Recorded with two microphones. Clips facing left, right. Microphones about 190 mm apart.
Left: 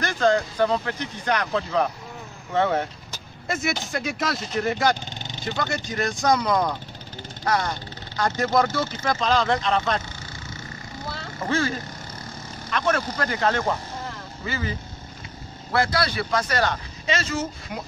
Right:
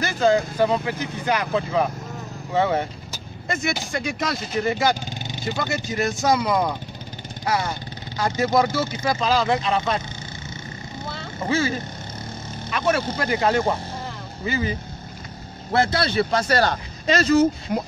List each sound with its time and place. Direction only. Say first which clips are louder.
0.0 s speech: right 2 dB; 5° right (ahead or behind)
2.5 s vehicle: right 1 dB; centre (ahead or behind)
3.9 s speech: right 1 dB; centre (ahead or behind)
11.4 s speech: right 2 dB; 5° right (ahead or behind)
12.7 s speech: right 2 dB; 10° right (ahead or behind); by 17.8 s 35° right (ahead or behind)